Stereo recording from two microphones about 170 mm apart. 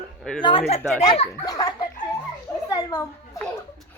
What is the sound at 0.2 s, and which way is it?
Speech, 5° left (ahead or behind).